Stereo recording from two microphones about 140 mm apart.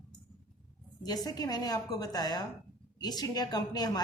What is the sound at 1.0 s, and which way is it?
A woman's voice, 25° left (ahead or behind).